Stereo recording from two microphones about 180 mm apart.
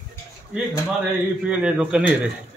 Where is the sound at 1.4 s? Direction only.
5° right (ahead or behind).